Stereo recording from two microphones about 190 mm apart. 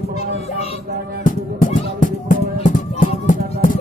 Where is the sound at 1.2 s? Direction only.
45° left (ahead or behind).